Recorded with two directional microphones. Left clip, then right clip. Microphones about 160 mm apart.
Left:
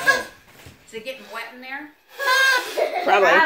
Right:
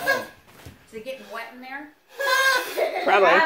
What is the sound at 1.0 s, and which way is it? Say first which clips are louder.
Speech: left 1 dB; 10° right (ahead or behind).